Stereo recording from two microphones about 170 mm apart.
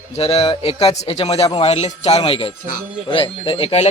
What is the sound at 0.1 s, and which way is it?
A man's voice, 35° left (ahead or behind).